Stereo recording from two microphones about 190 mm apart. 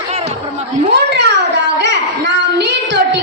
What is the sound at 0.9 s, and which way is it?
Child singing, 65° right (ahead or behind).